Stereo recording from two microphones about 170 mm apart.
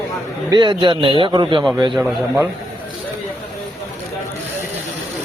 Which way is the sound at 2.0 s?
10° right (ahead or behind).